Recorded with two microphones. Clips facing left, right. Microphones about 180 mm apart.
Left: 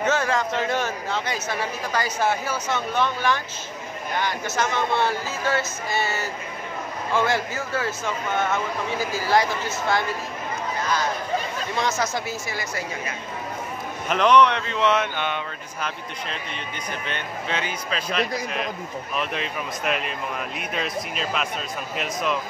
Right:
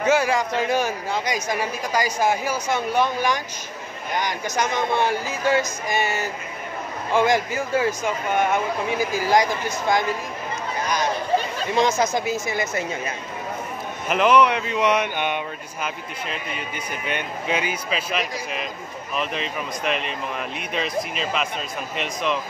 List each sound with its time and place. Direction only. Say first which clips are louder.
0.0 s speech: right 3 dB; 10° right (ahead or behind)
11.3 s speech: right 5 dB; 20° right (ahead or behind)
14.0 s speech: even; 5° right (ahead or behind)